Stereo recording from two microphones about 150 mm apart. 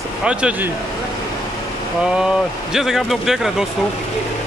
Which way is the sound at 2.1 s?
5° right (ahead or behind).